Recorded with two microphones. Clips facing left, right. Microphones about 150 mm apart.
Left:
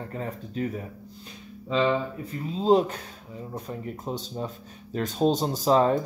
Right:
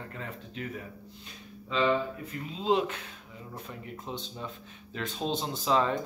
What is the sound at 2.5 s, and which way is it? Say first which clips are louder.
Speech: left 7 dB; 40° left (ahead or behind).